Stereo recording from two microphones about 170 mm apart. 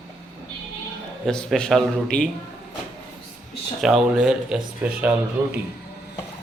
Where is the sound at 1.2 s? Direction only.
Centre (ahead or behind).